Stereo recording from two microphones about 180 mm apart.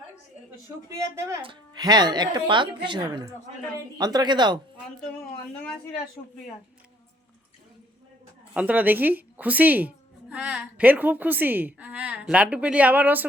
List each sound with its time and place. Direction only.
0.9 s a woman's voice: 15° right (ahead or behind)
8.5 s a woman's voice: 10° right (ahead or behind)